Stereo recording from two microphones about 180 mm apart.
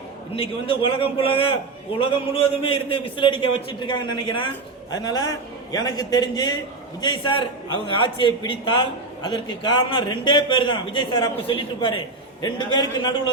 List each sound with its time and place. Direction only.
0.3 s a man's voice: 30° left (ahead or behind)